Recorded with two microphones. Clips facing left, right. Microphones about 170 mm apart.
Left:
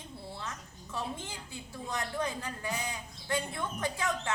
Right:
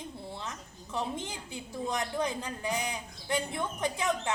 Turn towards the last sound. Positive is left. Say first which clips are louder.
# right 3 dB
turn(degrees=-20)  # may be behind; listen again after turning